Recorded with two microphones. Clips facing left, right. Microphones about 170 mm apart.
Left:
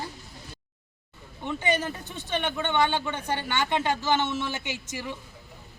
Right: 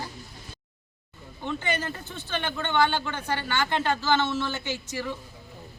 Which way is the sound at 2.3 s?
20° left (ahead or behind).